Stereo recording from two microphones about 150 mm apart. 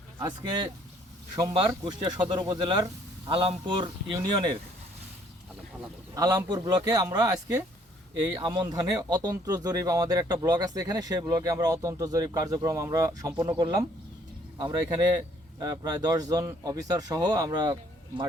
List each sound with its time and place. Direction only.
0.2 s speech: 30° right (ahead or behind)
6.1 s speech: 25° right (ahead or behind)